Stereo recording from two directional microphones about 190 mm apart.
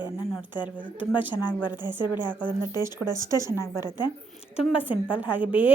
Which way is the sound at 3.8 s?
20° left (ahead or behind).